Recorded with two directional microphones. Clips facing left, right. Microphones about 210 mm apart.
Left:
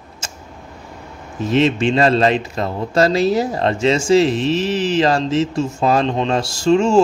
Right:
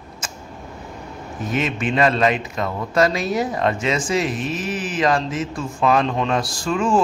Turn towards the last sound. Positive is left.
turn(degrees=25)  # may be behind; listen again after turning